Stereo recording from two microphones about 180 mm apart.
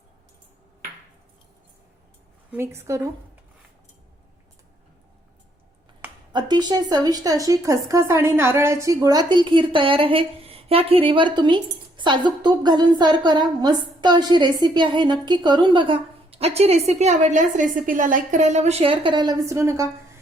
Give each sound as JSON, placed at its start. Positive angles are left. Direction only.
{"t": 2.5, "sound": "a woman's voice", "side_deg": -15}
{"t": 6.3, "sound": "a woman's voice", "side_deg": -25}